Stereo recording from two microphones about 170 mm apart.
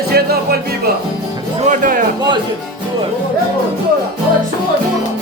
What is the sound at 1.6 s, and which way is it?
Music, 50° right (ahead or behind).